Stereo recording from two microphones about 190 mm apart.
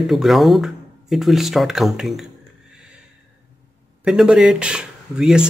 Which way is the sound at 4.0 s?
5° right (ahead or behind).